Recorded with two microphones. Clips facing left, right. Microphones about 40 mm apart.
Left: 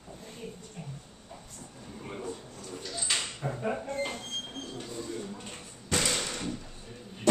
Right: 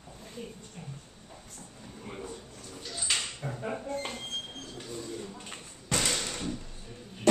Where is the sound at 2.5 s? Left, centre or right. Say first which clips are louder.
Left 3 dB; left.